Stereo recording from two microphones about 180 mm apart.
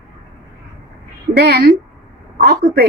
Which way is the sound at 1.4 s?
60° right (ahead or behind).